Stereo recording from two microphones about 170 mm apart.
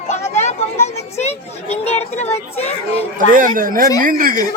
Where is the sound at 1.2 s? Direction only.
40° left (ahead or behind).